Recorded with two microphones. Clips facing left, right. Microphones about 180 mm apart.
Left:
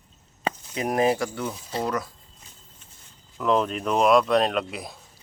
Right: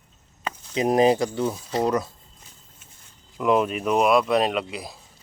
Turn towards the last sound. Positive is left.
turn(degrees=0)  # may be behind; listen again after turning